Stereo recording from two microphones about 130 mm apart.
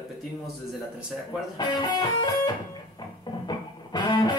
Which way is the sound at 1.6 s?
35° left (ahead or behind).